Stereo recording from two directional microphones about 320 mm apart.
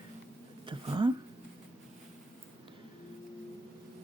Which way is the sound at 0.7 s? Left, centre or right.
Centre.